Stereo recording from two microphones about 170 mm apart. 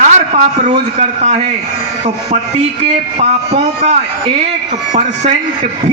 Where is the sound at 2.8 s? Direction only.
40° right (ahead or behind).